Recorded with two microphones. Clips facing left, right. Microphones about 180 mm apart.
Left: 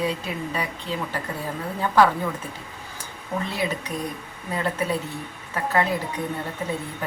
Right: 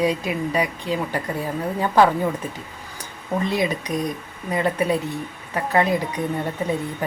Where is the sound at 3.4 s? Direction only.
15° right (ahead or behind).